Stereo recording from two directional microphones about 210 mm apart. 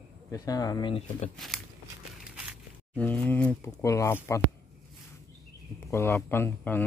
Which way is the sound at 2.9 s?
10° left (ahead or behind).